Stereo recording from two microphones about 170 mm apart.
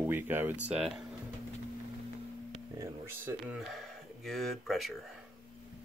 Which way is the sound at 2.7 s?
15° right (ahead or behind).